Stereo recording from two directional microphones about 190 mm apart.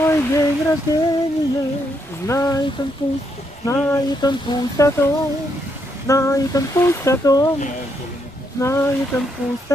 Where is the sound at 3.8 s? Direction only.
20° left (ahead or behind).